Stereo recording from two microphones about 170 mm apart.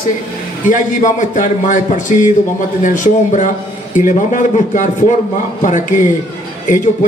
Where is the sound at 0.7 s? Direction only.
45° left (ahead or behind).